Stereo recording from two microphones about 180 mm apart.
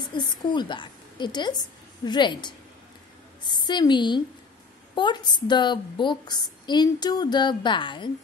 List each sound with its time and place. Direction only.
0.0 s a woman's voice: 25° left (ahead or behind)